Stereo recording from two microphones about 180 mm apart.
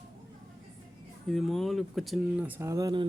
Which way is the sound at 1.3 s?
Centre (ahead or behind).